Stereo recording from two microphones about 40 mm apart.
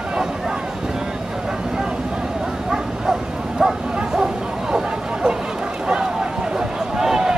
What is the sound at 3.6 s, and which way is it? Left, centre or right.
Bow-wow, centre.